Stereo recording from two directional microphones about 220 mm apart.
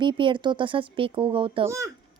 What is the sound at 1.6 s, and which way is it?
Speech, 15° right (ahead or behind).